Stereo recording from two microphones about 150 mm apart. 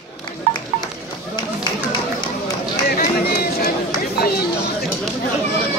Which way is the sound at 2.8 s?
85° left.